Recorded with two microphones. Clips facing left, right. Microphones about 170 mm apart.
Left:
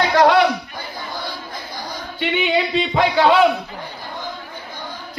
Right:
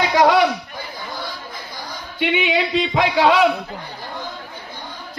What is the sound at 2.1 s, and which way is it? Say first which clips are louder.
Speech: even; 5° right (ahead or behind).